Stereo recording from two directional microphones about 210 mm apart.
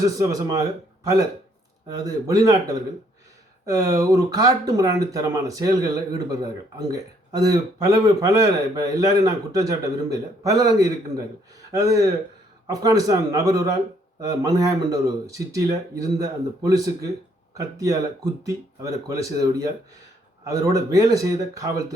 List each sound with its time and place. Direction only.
0.0 s a man's voice: 15° right (ahead or behind)
6.7 s a man's voice: 15° right (ahead or behind)